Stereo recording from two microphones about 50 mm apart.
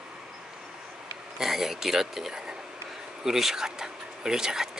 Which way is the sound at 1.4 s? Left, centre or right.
Centre.